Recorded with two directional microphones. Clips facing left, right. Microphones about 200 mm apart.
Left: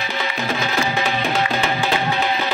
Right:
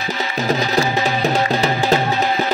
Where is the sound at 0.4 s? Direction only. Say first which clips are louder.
Right 6 dB; 40° right (ahead or behind).